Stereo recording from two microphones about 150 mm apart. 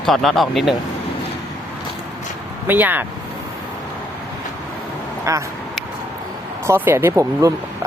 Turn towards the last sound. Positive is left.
turn(degrees=-20)  # may be behind; listen again after turning